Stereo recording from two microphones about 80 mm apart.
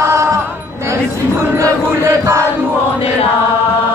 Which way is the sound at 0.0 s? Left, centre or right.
Right.